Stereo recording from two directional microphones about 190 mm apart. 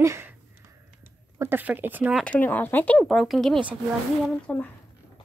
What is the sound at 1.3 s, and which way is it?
Speech, 10° right (ahead or behind).